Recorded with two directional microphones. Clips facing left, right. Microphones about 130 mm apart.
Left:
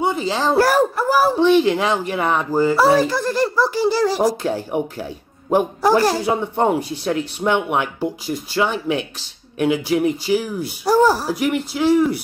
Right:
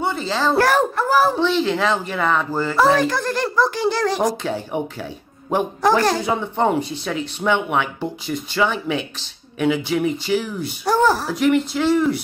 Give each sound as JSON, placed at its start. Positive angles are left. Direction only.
{"t": 0.0, "sound": "a child's voice", "side_deg": 15}